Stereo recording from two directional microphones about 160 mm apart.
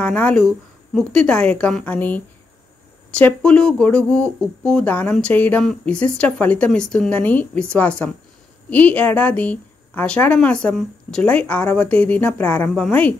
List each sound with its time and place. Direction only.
0.0 s a woman's voice: 5° left (ahead or behind)